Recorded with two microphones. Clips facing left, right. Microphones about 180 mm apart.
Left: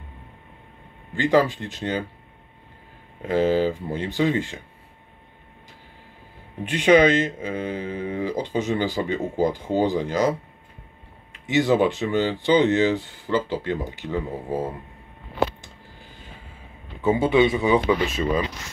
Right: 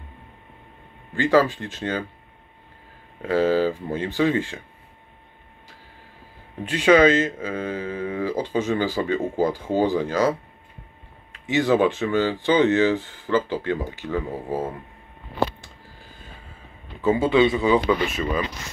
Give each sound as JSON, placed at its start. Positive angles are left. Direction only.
{"t": 1.3, "sound": "speech", "side_deg": 15}
{"t": 3.3, "sound": "speech", "side_deg": 20}
{"t": 6.6, "sound": "speech", "side_deg": 15}
{"t": 11.4, "sound": "speech", "side_deg": 15}
{"t": 17.0, "sound": "speech", "side_deg": 20}